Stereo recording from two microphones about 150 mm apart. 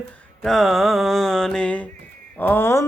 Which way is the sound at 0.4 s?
Centre (ahead or behind).